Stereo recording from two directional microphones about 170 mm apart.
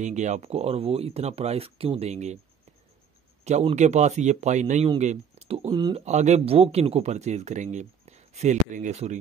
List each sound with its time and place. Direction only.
0.0 s speech: 45° right (ahead or behind)
3.4 s speech: 40° right (ahead or behind)
5.9 s speech: 40° right (ahead or behind)